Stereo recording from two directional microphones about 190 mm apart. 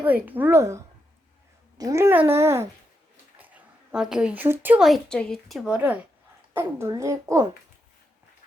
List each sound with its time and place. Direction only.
0.0 s a child's voice: 10° right (ahead or behind)
1.8 s a child's voice: 15° right (ahead or behind)